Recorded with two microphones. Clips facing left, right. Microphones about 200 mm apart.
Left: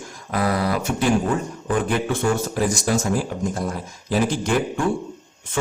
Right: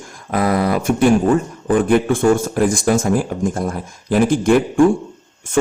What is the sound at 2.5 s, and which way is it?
A man's voice, 50° right (ahead or behind).